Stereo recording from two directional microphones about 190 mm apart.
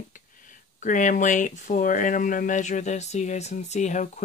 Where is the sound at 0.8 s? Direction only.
40° left (ahead or behind).